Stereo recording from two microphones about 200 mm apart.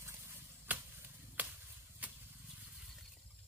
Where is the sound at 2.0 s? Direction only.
10° right (ahead or behind).